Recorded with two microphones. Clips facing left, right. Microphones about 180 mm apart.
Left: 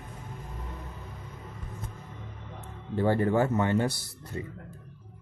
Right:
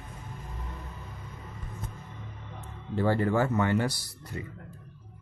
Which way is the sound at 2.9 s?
20° left (ahead or behind).